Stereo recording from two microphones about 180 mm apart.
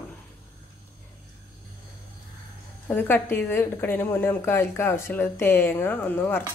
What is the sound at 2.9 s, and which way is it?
A woman's voice, 10° left (ahead or behind).